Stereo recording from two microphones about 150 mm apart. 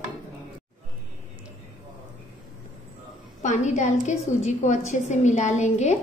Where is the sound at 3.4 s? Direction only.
55° left (ahead or behind).